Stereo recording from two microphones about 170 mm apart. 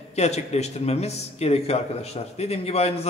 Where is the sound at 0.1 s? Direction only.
40° left (ahead or behind).